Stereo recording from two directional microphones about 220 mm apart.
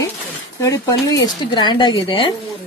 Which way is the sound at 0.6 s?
15° left (ahead or behind).